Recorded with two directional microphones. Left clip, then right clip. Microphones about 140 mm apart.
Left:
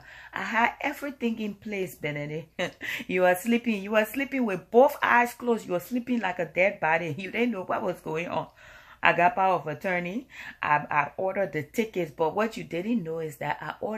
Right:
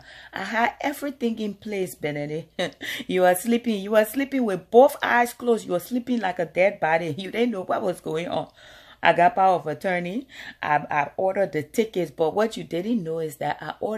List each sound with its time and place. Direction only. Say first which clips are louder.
0.3 s speech: right 1 dB; 35° right (ahead or behind)